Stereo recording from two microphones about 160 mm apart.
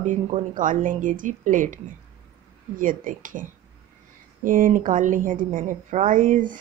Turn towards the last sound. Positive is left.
turn(degrees=-55)  # may be behind; listen again after turning